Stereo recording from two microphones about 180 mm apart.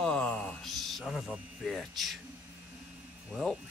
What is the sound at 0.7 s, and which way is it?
Speech, centre (ahead or behind).